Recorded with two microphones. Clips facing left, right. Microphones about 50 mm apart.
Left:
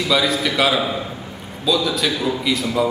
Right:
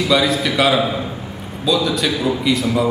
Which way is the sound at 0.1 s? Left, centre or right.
Centre.